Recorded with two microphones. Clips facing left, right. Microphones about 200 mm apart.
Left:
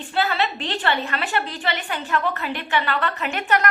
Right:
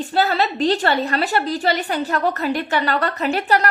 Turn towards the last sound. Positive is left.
turn(degrees=-35)  # may be behind; listen again after turning